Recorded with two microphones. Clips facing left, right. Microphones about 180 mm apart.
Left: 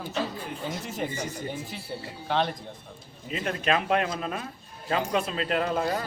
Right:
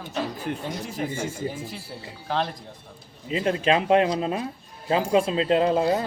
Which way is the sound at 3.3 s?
30° right (ahead or behind).